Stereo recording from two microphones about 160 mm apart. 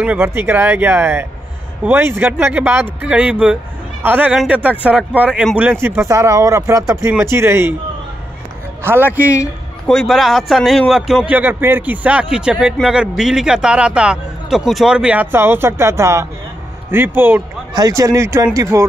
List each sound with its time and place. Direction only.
0.0 s speech: 10° right (ahead or behind)
5.7 s speech: 15° right (ahead or behind)
8.8 s speech: 10° right (ahead or behind)
9.8 s a man's voice: centre (ahead or behind); by 18.9 s 20° right (ahead or behind)